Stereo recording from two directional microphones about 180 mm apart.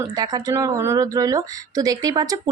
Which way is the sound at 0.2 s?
20° right (ahead or behind).